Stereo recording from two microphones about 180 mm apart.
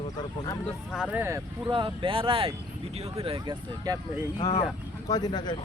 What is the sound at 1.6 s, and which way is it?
Speech, 25° right (ahead or behind).